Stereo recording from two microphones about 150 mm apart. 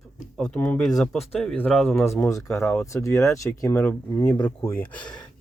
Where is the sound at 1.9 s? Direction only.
15° left (ahead or behind).